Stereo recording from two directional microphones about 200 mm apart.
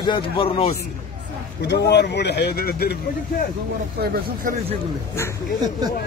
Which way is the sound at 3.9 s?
50° right (ahead or behind).